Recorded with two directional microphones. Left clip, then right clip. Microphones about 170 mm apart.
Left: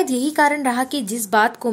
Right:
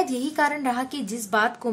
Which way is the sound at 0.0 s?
25° left (ahead or behind).